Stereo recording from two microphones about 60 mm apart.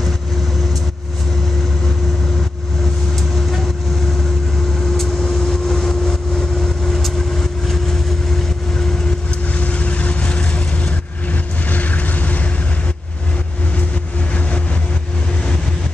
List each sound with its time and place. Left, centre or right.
4.9 s vehicle: centre
9.5 s vehicle: left